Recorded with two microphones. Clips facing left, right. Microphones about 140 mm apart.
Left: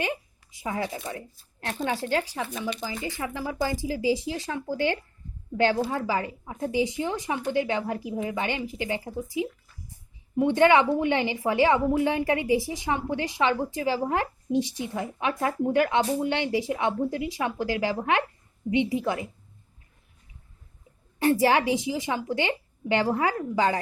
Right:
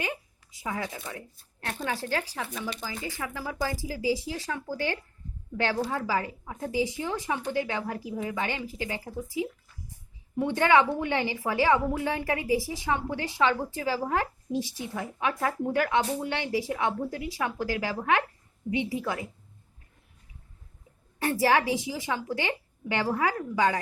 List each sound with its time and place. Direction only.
0.6 s a woman's voice: 25° left (ahead or behind)
10.3 s a woman's voice: 20° left (ahead or behind)
21.2 s a woman's voice: 20° left (ahead or behind)